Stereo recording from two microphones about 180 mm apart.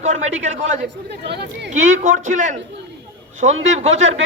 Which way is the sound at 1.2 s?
70° right (ahead or behind).